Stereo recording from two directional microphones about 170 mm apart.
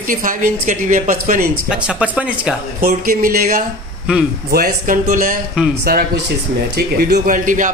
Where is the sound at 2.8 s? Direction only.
55° right (ahead or behind).